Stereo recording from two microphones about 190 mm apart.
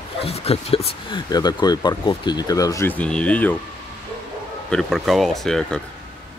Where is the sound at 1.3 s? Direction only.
20° left (ahead or behind).